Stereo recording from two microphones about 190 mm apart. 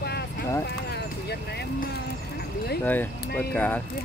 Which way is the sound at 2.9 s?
10° left (ahead or behind).